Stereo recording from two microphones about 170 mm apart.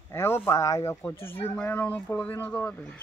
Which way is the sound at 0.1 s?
15° left (ahead or behind).